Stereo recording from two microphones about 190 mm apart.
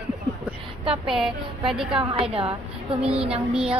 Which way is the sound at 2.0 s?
30° right (ahead or behind).